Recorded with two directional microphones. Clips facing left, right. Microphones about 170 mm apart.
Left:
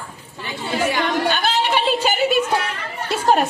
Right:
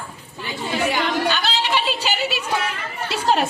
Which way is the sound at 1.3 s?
50° left (ahead or behind).